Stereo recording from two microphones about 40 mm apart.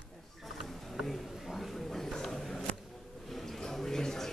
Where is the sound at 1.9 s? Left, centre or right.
Centre.